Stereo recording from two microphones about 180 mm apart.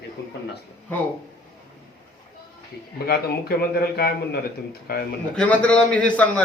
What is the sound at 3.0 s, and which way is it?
Speech, 60° left (ahead or behind).